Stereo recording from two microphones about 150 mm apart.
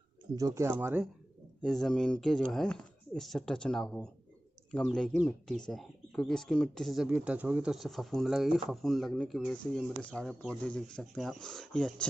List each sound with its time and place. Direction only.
0.4 s speech: 20° right (ahead or behind)
1.6 s speech: centre (ahead or behind)